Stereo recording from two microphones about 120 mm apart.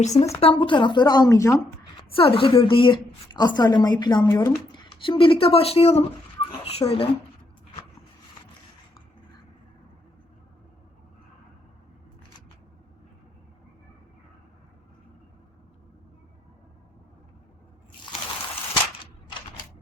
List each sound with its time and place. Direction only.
0.0 s speech: 70° left (ahead or behind)
0.3 s speech: 50° left (ahead or behind); by 2.0 s 30° left (ahead or behind)
2.0 s a woman's voice: 50° left (ahead or behind)